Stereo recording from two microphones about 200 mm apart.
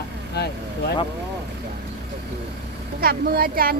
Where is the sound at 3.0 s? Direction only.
50° right (ahead or behind).